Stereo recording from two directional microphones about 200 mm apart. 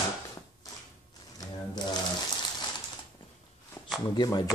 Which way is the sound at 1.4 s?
20° left (ahead or behind).